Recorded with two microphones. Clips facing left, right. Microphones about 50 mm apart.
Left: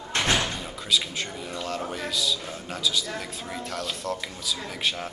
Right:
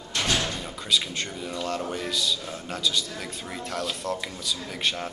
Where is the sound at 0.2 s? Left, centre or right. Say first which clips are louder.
Left 1 dB; left.